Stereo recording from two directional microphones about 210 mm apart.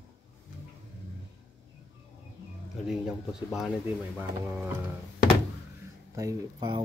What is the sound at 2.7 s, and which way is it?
Speech, centre (ahead or behind).